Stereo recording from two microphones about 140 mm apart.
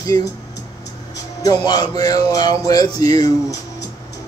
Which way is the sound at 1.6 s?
30° left (ahead or behind).